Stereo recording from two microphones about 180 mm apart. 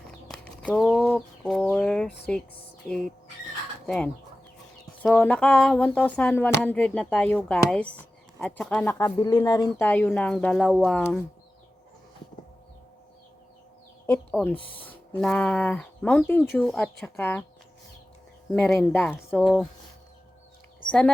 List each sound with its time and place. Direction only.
0.3 s chicken: 5° left (ahead or behind)
2.8 s speech: 5° left (ahead or behind)
5.2 s a sound: 10° left (ahead or behind)
9.0 s speech: 20° left (ahead or behind)
9.8 s speech: 10° left (ahead or behind)
14.1 s a sound: 10° left (ahead or behind)
14.8 s speech: 10° left (ahead or behind)
16.6 s a sound: 5° left (ahead or behind)
18.5 s speech: 5° left (ahead or behind)